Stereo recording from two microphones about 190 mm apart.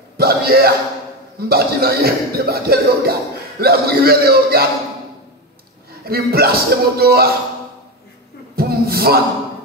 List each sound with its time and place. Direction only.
0.2 s a man's voice: 55° right (ahead or behind)
6.0 s speech: 55° right (ahead or behind)
8.5 s music: 55° right (ahead or behind)